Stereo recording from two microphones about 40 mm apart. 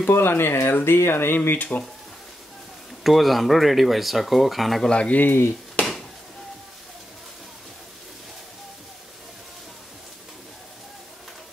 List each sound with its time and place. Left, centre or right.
0.1 s speech: left
3.0 s speech: centre
4.8 s speech: left
5.1 s speech: left